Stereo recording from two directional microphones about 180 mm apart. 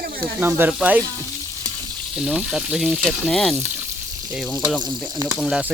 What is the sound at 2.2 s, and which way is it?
Speech, 5° right (ahead or behind).